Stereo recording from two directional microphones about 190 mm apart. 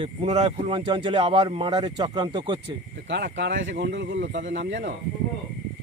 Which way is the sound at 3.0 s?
65° right (ahead or behind).